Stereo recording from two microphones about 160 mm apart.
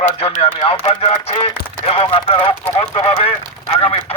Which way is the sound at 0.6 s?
35° left (ahead or behind).